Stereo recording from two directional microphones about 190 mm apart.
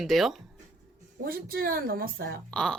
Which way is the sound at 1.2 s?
50° right (ahead or behind).